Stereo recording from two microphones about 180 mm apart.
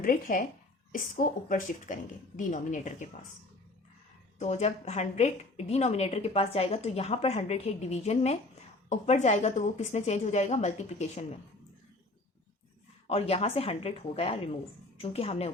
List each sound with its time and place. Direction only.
0.0 s a woman's voice: 50° left (ahead or behind)
4.4 s a woman's voice: 40° left (ahead or behind)
13.1 s a woman's voice: 35° left (ahead or behind)